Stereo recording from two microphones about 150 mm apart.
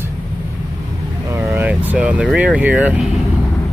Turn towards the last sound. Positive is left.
turn(degrees=-10)  # may be behind; listen again after turning